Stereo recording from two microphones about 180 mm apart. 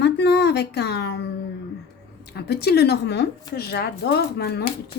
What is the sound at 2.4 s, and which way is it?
Speech, 60° left (ahead or behind).